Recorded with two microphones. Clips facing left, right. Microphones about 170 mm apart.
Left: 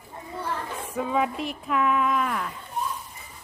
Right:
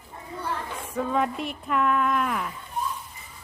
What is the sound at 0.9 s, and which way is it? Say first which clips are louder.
A woman's voice: even; 5° left (ahead or behind).